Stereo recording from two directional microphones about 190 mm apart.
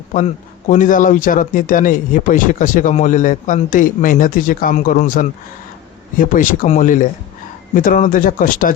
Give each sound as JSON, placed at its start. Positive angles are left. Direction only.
{"t": 0.1, "sound": "a man's voice", "side_deg": 40}